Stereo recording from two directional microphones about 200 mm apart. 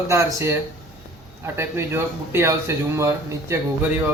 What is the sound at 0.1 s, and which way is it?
A man's voice, 15° right (ahead or behind).